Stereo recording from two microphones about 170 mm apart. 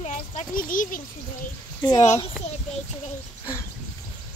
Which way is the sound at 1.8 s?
25° left (ahead or behind).